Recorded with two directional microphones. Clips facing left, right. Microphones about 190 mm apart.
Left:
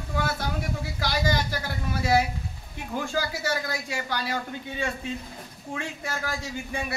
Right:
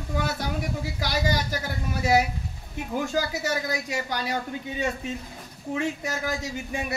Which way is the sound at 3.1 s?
20° right (ahead or behind).